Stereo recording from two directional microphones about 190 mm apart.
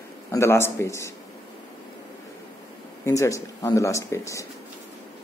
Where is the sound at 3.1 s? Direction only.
15° left (ahead or behind).